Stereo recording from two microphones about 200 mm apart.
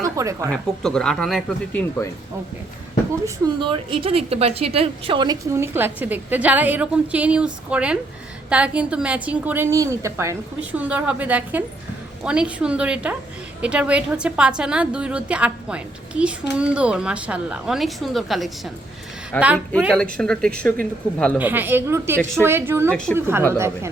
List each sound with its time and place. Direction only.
0.0 s a sound: 15° right (ahead or behind)
0.5 s a woman's voice: 5° left (ahead or behind)
3.2 s a woman's voice: 25° right (ahead or behind); by 18.7 s centre (ahead or behind)
19.3 s a woman's voice: 10° left (ahead or behind)
21.3 s a woman's voice: 10° right (ahead or behind)
22.9 s a woman's voice: 5° left (ahead or behind)
23.1 s a woman's voice: 10° right (ahead or behind)